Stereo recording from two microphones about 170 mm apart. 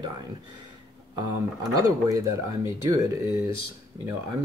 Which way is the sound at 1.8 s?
20° right (ahead or behind).